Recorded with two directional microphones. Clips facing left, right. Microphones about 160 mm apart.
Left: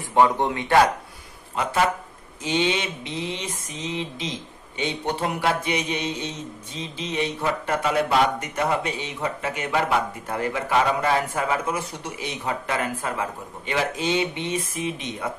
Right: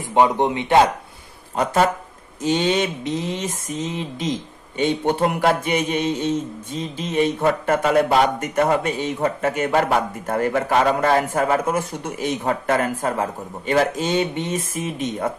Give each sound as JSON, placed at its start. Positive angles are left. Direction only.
{"t": 0.1, "sound": "speech", "side_deg": -20}
{"t": 1.6, "sound": "speech", "side_deg": -40}
{"t": 2.4, "sound": "mantra", "side_deg": -45}